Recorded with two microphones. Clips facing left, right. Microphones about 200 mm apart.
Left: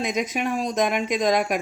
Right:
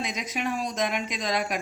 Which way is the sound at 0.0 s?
50° left (ahead or behind).